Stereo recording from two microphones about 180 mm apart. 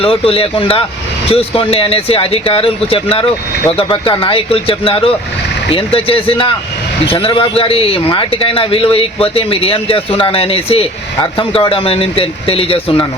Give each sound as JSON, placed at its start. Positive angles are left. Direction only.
{"t": 0.0, "sound": "a man's voice", "side_deg": 30}